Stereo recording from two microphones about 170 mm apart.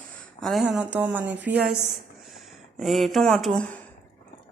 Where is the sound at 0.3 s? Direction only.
Centre (ahead or behind).